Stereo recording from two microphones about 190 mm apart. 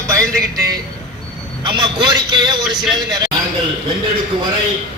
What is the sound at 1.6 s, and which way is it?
A man's voice, 25° right (ahead or behind).